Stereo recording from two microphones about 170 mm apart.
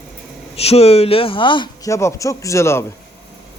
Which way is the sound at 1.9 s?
15° left (ahead or behind).